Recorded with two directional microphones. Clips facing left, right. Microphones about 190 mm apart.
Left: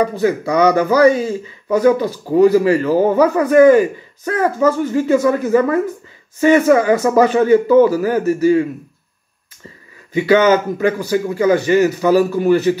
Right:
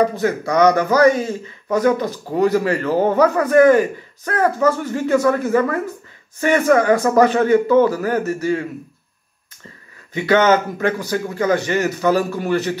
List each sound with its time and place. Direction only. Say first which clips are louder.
0.5 s speech: even; 10° left (ahead or behind)
10.1 s speech: left 3 dB; 10° left (ahead or behind)